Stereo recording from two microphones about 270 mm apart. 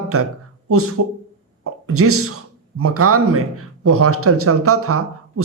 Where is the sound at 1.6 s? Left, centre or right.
Right.